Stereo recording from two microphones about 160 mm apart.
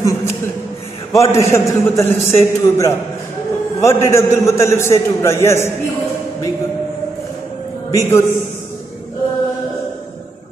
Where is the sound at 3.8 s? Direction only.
20° left (ahead or behind).